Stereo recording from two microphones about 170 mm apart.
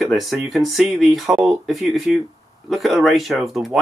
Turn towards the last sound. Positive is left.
turn(degrees=0)  # may be behind; listen again after turning